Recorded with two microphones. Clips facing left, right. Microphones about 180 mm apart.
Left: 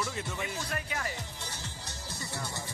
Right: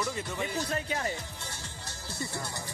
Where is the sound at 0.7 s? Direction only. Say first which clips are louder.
Right 4 dB; 25° right (ahead or behind).